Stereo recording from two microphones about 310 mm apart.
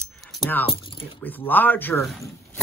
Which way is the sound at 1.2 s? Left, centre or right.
Centre.